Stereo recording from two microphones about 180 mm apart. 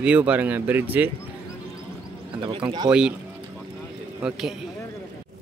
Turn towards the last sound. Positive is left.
turn(degrees=-5)  # may be behind; listen again after turning